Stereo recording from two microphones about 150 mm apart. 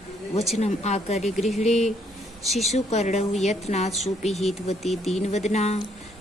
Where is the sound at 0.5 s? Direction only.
50° left (ahead or behind).